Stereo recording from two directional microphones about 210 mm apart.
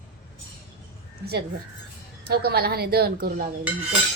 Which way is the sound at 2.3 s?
50° right (ahead or behind).